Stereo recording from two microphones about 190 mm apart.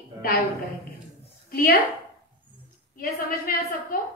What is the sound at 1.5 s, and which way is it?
Speech, 50° left (ahead or behind).